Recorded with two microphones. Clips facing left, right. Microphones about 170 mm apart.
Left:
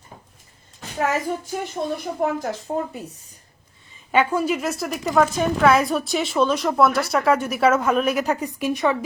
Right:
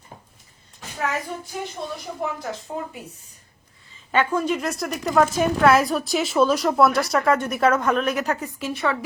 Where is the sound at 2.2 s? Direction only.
45° left (ahead or behind).